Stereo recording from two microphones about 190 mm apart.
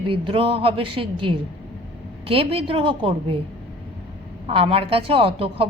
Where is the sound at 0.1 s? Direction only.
30° right (ahead or behind).